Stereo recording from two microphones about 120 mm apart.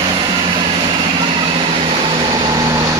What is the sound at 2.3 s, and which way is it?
Vehicle, 30° right (ahead or behind).